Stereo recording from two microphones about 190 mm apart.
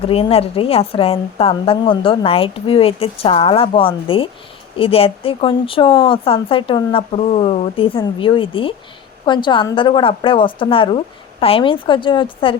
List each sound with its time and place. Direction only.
0.0 s a woman's voice: 30° left (ahead or behind)